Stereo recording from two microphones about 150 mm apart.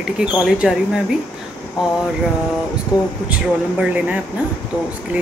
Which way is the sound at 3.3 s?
10° right (ahead or behind).